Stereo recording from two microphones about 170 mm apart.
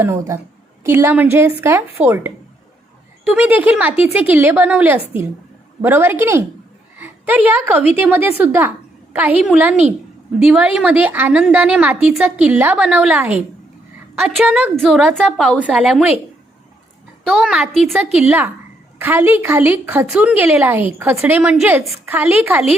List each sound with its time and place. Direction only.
0.0 s a woman's voice: 15° right (ahead or behind)
17.2 s a woman's voice: 5° right (ahead or behind)